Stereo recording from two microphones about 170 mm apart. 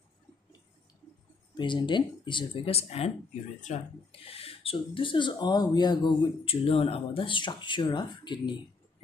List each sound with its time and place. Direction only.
1.6 s speech: 25° left (ahead or behind)